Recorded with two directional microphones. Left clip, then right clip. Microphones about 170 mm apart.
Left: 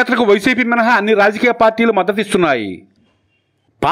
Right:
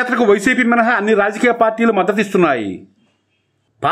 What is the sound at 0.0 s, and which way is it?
A man's voice, 30° left (ahead or behind).